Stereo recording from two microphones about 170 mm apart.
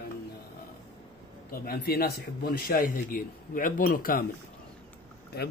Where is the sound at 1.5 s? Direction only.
65° left (ahead or behind).